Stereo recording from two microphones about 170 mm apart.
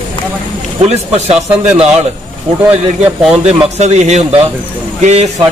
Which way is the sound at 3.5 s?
40° right (ahead or behind).